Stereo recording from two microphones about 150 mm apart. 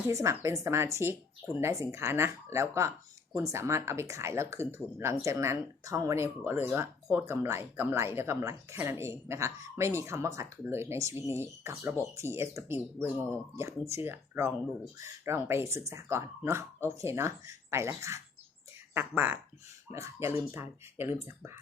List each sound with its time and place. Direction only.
0.1 s speech: 20° right (ahead or behind)